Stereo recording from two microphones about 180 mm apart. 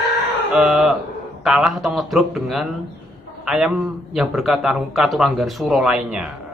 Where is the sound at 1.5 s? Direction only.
Centre (ahead or behind).